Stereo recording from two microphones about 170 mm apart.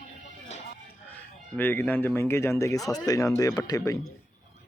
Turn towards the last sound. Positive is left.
turn(degrees=20)  # may be behind; listen again after turning